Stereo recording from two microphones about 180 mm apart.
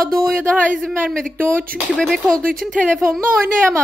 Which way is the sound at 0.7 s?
Centre (ahead or behind).